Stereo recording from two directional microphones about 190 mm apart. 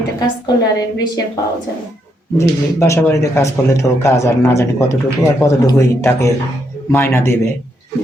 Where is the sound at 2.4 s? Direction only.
15° left (ahead or behind).